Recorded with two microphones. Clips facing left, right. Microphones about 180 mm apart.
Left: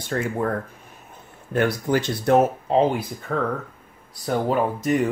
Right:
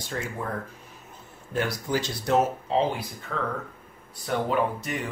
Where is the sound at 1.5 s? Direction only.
55° left (ahead or behind).